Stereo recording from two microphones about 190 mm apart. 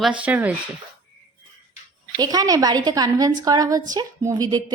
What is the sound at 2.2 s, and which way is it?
A woman's voice, 20° right (ahead or behind).